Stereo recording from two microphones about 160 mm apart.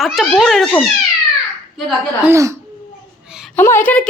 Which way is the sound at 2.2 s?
20° right (ahead or behind).